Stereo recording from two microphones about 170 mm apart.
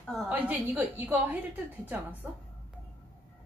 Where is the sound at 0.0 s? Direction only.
Centre (ahead or behind).